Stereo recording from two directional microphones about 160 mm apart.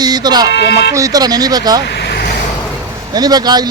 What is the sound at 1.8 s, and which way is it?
Vehicle, 90° left.